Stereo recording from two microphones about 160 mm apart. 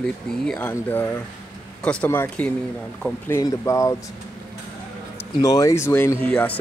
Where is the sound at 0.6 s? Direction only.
10° left (ahead or behind).